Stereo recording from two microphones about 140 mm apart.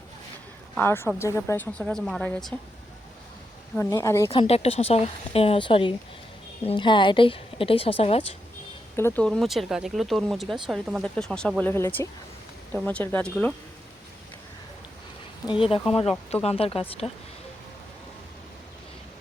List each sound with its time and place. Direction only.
0.8 s speech: 15° left (ahead or behind)
1.8 s speech: 5° left (ahead or behind)
3.8 s a woman's voice: 20° left (ahead or behind)
4.3 s a woman's voice: 45° left (ahead or behind)
9.0 s speech: 15° left (ahead or behind)
9.2 s speech: centre (ahead or behind)
15.4 s a woman's voice: 40° left (ahead or behind)